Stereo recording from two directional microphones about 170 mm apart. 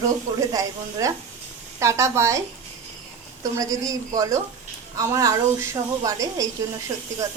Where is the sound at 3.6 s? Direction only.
20° right (ahead or behind).